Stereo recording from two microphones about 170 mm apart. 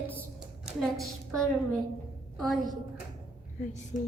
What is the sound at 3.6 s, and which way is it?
Speech, 50° left (ahead or behind).